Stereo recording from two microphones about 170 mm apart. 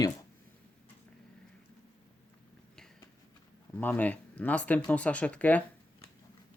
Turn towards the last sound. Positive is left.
turn(degrees=10)  # may be behind; listen again after turning